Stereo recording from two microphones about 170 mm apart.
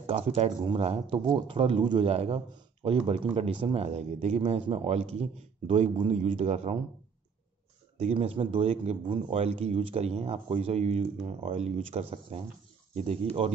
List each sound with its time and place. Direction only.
0.0 s a man's voice: 35° right (ahead or behind)
8.0 s a man's voice: 35° right (ahead or behind)